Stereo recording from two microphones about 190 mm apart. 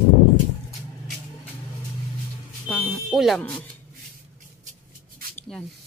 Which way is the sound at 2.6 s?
5° left (ahead or behind).